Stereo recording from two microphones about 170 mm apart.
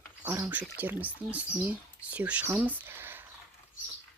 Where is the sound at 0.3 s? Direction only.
10° right (ahead or behind).